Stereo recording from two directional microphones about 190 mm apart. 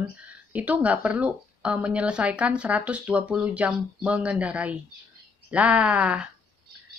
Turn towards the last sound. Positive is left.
turn(degrees=-5)  # may be behind; listen again after turning